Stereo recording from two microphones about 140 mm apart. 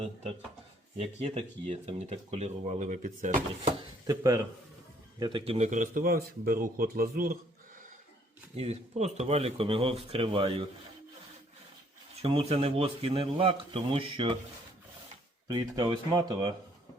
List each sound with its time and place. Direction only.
0.9 s speech: 45° right (ahead or behind); by 3.3 s 65° right (ahead or behind)
3.6 s speech: 40° right (ahead or behind)
4.0 s speech: 25° right (ahead or behind)
5.2 s speech: 35° right (ahead or behind)
5.5 s speech: 60° right (ahead or behind); by 7.3 s 90° right
8.5 s speech: 50° right (ahead or behind)
12.2 s speech: 40° right (ahead or behind)
15.5 s speech: 25° right (ahead or behind)